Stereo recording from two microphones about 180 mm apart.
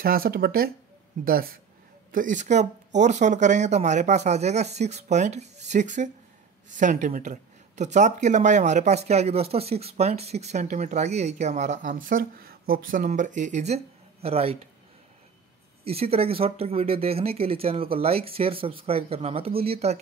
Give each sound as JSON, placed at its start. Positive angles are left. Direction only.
{"t": 0.0, "sound": "speech", "side_deg": -55}
{"t": 2.1, "sound": "speech", "side_deg": -45}
{"t": 15.8, "sound": "speech", "side_deg": -35}